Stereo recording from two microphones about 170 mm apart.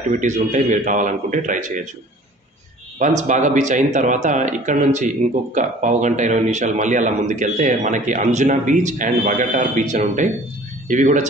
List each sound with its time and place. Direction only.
0.1 s speech: 45° right (ahead or behind)
3.0 s speech: 45° right (ahead or behind)